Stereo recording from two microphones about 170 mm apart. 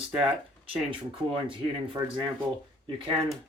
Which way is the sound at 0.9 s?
30° right (ahead or behind).